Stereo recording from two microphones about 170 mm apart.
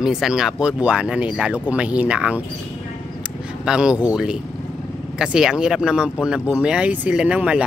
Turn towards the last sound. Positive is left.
turn(degrees=-5)  # may be behind; listen again after turning